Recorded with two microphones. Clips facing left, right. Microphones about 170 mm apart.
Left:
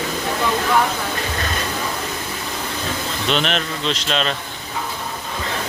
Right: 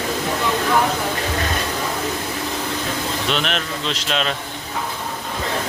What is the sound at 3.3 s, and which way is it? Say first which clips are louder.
A man's voice: left 2 dB; 5° right (ahead or behind).